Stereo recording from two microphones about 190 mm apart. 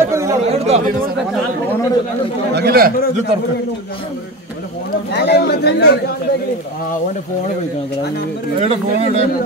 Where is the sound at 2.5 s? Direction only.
55° right (ahead or behind).